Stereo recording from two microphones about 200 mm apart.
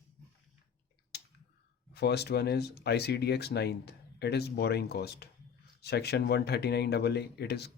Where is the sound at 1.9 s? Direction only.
55° left (ahead or behind).